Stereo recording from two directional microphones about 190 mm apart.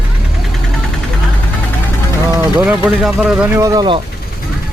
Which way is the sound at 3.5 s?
15° right (ahead or behind).